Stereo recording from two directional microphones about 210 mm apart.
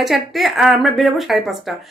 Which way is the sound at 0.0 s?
Centre (ahead or behind).